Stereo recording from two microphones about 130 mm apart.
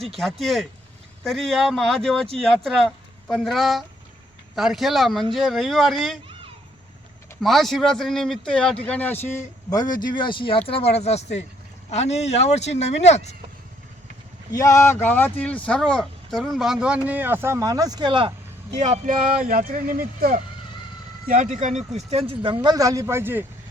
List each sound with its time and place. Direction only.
0.1 s speech: centre (ahead or behind)
7.4 s speech: centre (ahead or behind); by 9.4 s 15° left (ahead or behind)
9.6 s speech: 30° left (ahead or behind); by 13.3 s 60° left (ahead or behind)
14.5 s speech: 25° left (ahead or behind); by 18.3 s 35° right (ahead or behind)
18.7 s speech: 65° right (ahead or behind); by 22.5 s 40° right (ahead or behind)
22.5 s speech: 30° right (ahead or behind)